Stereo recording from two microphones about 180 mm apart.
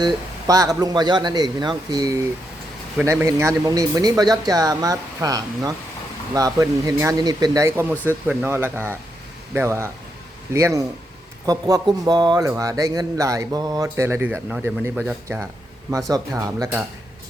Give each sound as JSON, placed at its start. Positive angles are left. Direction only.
{"t": 0.0, "sound": "speech", "side_deg": -20}